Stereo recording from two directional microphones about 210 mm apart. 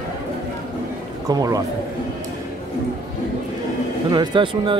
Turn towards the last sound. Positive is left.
turn(degrees=-25)  # may be behind; listen again after turning